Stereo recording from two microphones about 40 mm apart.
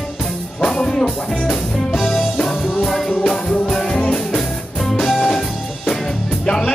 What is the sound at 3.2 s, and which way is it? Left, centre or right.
Music, centre.